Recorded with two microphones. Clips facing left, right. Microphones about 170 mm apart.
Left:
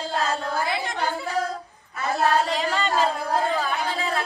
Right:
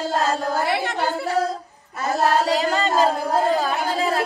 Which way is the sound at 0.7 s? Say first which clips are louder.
Right 4 dB; 65° right (ahead or behind).